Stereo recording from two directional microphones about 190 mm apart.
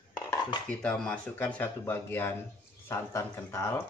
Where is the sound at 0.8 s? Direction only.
5° left (ahead or behind).